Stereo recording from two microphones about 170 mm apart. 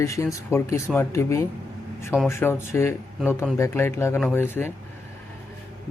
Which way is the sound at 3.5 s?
15° left (ahead or behind).